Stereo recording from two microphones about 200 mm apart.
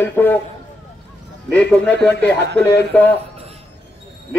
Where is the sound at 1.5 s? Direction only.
5° left (ahead or behind).